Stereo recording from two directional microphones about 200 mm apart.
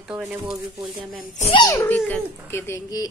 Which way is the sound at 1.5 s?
20° left (ahead or behind).